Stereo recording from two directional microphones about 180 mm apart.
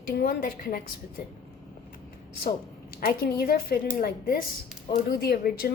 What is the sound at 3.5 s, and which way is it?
Speech, 55° left (ahead or behind).